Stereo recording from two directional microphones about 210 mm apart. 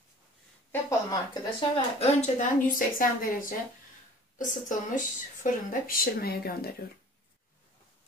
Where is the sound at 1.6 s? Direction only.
30° left (ahead or behind); by 6.7 s 45° left (ahead or behind).